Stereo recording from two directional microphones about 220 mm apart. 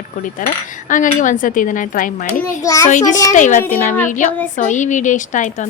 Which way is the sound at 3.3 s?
35° left (ahead or behind).